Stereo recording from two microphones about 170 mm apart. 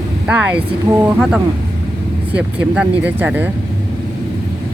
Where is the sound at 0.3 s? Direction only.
10° right (ahead or behind).